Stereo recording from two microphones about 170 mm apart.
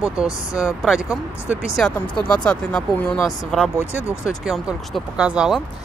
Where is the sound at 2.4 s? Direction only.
5° left (ahead or behind).